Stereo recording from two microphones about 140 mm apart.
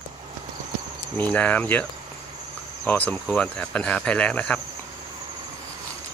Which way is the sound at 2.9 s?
10° left (ahead or behind).